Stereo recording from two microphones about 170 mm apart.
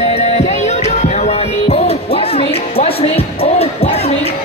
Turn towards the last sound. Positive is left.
turn(degrees=35)  # may be behind; listen again after turning